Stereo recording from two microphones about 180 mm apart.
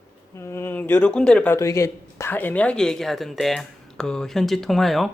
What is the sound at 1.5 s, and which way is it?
Speech, 15° left (ahead or behind).